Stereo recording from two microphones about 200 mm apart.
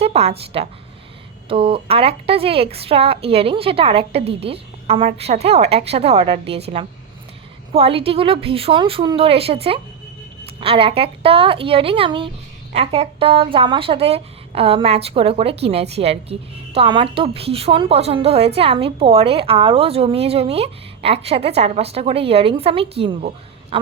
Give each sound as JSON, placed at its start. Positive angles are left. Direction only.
{"t": 0.0, "sound": "a woman's voice", "side_deg": -30}